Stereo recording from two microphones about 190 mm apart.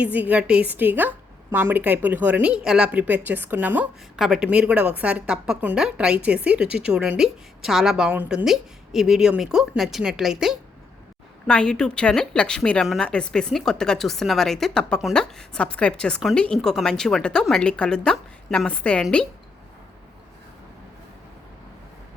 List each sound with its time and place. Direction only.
0.0 s a woman's voice: 10° right (ahead or behind)